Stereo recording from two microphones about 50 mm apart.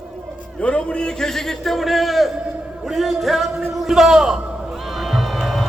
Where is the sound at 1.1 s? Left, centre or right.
Centre.